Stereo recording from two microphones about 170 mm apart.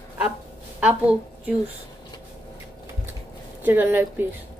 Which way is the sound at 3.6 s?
10° right (ahead or behind).